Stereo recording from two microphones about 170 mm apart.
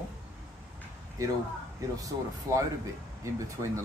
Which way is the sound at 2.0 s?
20° right (ahead or behind).